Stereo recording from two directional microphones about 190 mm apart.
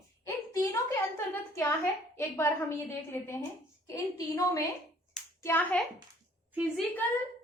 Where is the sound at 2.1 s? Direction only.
15° left (ahead or behind).